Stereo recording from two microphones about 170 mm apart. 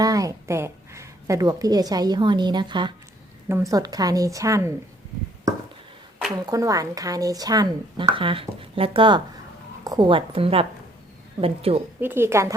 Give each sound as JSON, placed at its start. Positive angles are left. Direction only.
{"t": 0.0, "sound": "a woman's voice", "side_deg": -20}
{"t": 6.4, "sound": "a woman's voice", "side_deg": -20}
{"t": 11.9, "sound": "a woman's voice", "side_deg": -10}